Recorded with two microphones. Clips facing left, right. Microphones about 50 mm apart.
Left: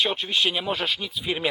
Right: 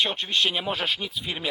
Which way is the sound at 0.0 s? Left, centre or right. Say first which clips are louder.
Left 1 dB; centre.